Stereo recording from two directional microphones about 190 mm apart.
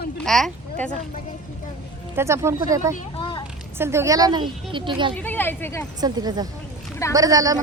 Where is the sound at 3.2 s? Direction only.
25° left (ahead or behind).